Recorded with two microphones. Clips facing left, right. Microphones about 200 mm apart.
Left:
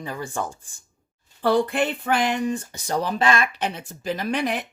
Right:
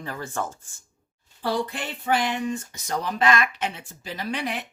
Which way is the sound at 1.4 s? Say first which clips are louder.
Left 7 dB; 60° left (ahead or behind).